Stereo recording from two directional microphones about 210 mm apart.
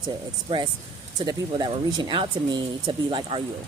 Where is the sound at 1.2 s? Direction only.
20° right (ahead or behind).